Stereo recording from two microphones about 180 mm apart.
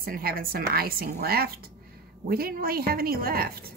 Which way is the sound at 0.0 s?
55° right (ahead or behind).